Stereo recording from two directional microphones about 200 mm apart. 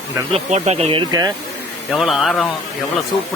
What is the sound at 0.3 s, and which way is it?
Speech, 35° right (ahead or behind).